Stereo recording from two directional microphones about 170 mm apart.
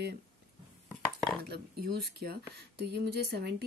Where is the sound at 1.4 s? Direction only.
70° right (ahead or behind).